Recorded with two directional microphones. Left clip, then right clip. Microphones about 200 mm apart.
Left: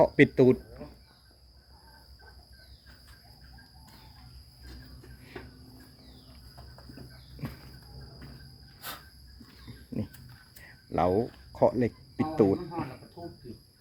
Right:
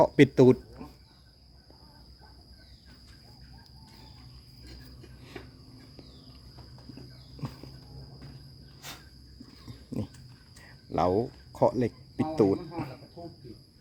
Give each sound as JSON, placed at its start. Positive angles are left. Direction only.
{"t": 0.0, "sound": "speech", "side_deg": -30}
{"t": 10.0, "sound": "a sound", "side_deg": -25}
{"t": 10.6, "sound": "cricket", "side_deg": -20}